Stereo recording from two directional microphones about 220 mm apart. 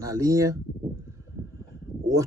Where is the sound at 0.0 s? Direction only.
15° right (ahead or behind).